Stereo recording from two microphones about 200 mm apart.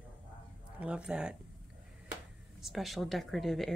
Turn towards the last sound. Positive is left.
turn(degrees=0)  # may be behind; listen again after turning